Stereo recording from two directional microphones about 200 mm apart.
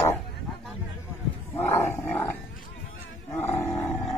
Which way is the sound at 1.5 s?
10° left (ahead or behind).